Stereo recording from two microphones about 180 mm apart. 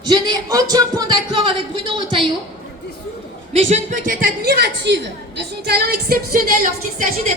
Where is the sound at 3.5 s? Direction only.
40° right (ahead or behind).